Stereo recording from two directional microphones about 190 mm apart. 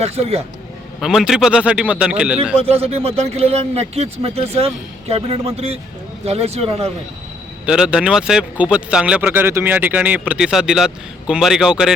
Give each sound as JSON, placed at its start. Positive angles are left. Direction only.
{"t": 0.0, "sound": "speech", "side_deg": -30}
{"t": 1.0, "sound": "speech", "side_deg": 0}
{"t": 2.6, "sound": "speech", "side_deg": -30}
{"t": 7.6, "sound": "speech", "side_deg": -5}